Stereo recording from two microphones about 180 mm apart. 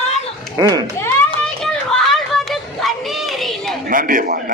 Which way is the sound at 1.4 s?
5° left (ahead or behind).